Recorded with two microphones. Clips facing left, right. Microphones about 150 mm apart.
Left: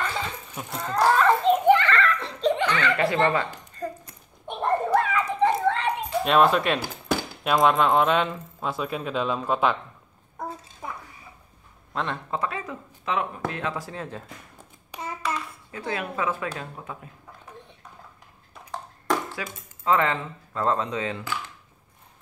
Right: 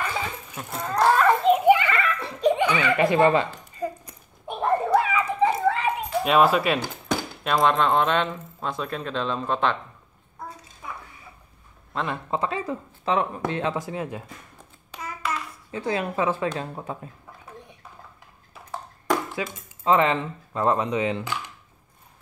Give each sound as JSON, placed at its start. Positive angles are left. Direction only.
{"t": 0.6, "sound": "speech", "side_deg": -5}
{"t": 1.1, "sound": "giggle", "side_deg": -5}
{"t": 6.8, "sound": "speech", "side_deg": 5}
{"t": 11.9, "sound": "a man's voice", "side_deg": 0}
{"t": 12.3, "sound": "a woman's voice", "side_deg": -25}
{"t": 15.7, "sound": "speech", "side_deg": -25}
{"t": 18.5, "sound": "a sound", "side_deg": -5}
{"t": 19.3, "sound": "speech", "side_deg": -20}